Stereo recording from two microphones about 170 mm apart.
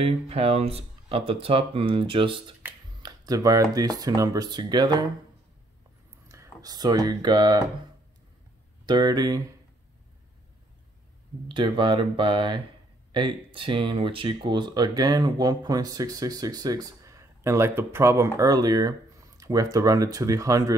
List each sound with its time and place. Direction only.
0.0 s speech: 35° right (ahead or behind)
3.0 s computer keyboard: 25° right (ahead or behind)
3.7 s speech: 20° right (ahead or behind)
6.2 s speech: 15° right (ahead or behind)
8.8 s speech: 25° right (ahead or behind)
11.4 s speech: 30° right (ahead or behind)